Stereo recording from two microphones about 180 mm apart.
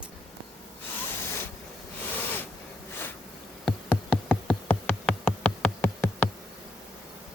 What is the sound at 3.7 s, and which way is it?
Insect, 5° left (ahead or behind).